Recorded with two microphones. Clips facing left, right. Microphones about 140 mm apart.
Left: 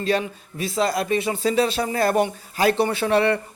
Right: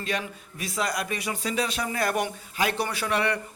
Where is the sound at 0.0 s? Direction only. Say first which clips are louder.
Left 8 dB; 30° left (ahead or behind).